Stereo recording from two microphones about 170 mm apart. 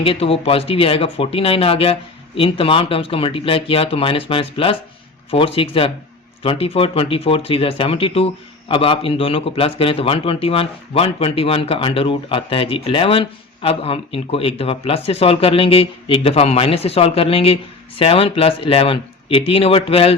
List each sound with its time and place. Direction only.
0.0 s a man's voice: 35° left (ahead or behind)